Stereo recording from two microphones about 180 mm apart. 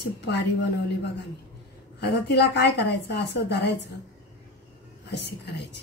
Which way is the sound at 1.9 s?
65° left (ahead or behind).